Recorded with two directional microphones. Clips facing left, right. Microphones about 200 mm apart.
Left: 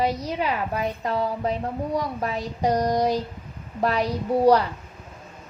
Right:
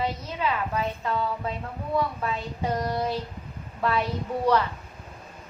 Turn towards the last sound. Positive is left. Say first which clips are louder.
# left 6 dB
turn(degrees=35)  # may be behind; listen again after turning